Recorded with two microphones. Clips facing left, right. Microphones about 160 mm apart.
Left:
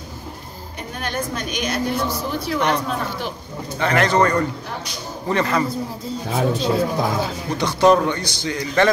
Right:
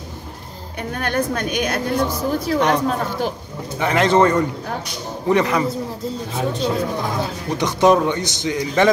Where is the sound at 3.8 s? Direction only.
20° right (ahead or behind).